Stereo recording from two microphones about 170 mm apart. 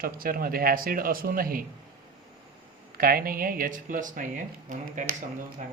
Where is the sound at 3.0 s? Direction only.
60° right (ahead or behind).